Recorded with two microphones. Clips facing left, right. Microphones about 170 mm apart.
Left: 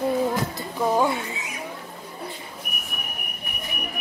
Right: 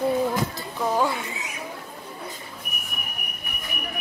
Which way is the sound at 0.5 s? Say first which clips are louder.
Left 2 dB; 20° left (ahead or behind).